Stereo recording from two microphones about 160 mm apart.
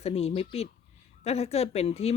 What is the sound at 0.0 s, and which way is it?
Speech, 40° left (ahead or behind).